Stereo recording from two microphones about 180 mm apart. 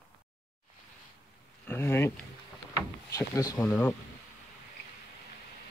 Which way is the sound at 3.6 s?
5° left (ahead or behind).